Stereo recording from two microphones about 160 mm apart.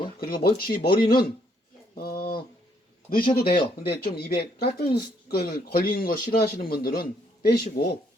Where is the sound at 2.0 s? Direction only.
65° left (ahead or behind).